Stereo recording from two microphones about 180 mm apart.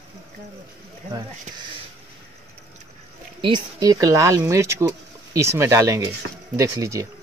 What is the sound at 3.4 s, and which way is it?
Speech, 25° right (ahead or behind).